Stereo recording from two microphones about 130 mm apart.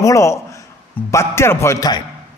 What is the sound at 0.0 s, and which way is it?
A man's voice, 25° left (ahead or behind).